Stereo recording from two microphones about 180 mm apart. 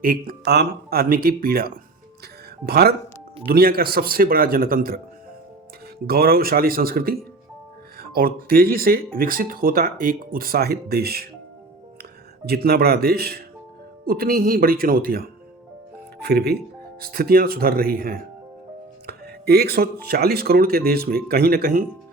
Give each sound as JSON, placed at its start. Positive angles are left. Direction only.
{"t": 0.0, "sound": "speech", "side_deg": -55}
{"t": 6.1, "sound": "speech", "side_deg": -55}
{"t": 12.5, "sound": "speech", "side_deg": -60}
{"t": 16.2, "sound": "speech", "side_deg": -65}